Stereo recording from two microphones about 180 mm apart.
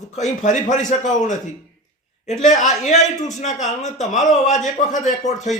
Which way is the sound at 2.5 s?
40° left (ahead or behind).